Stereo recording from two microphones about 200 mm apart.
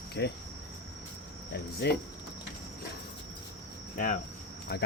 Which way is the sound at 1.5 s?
55° left (ahead or behind).